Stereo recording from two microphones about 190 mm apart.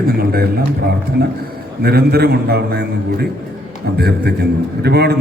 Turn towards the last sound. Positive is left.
turn(degrees=-60)  # may be behind; listen again after turning